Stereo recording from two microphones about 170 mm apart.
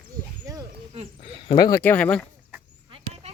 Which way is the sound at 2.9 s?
35° right (ahead or behind).